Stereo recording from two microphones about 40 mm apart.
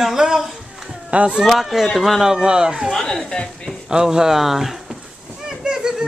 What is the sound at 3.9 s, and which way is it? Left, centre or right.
Speech, centre.